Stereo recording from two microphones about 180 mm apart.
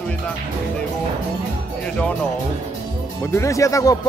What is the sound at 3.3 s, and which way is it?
Speech, 15° left (ahead or behind).